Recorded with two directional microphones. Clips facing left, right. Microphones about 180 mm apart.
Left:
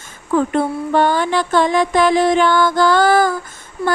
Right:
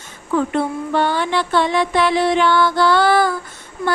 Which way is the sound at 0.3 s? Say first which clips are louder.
Left 2 dB; 45° left (ahead or behind).